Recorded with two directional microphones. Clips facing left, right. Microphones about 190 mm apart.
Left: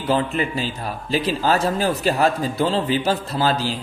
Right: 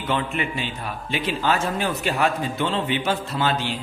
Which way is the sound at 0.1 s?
35° left (ahead or behind).